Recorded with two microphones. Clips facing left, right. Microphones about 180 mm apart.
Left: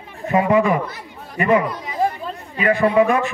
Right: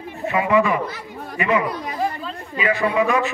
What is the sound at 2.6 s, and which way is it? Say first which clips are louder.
Speech: left 4 dB; 50° left (ahead or behind).